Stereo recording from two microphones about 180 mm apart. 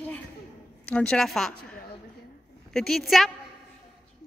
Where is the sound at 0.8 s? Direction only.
5° left (ahead or behind).